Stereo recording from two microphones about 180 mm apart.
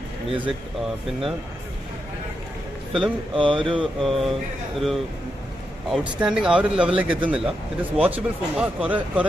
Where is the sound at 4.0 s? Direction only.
Centre (ahead or behind).